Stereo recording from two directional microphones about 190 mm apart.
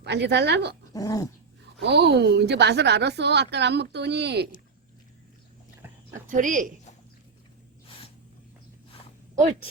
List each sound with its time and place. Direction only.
0.0 s a woman's voice: 65° right (ahead or behind)
0.9 s dog: 20° left (ahead or behind)
1.8 s a woman's voice: 60° right (ahead or behind)
6.1 s a woman's voice: 45° right (ahead or behind)